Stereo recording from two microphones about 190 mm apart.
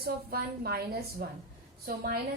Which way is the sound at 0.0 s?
55° right (ahead or behind).